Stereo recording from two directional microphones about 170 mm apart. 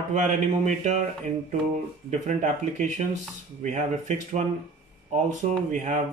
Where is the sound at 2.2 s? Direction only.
45° right (ahead or behind).